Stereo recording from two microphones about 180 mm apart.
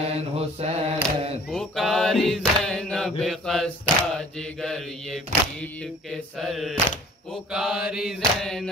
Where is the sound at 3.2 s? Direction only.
Centre (ahead or behind).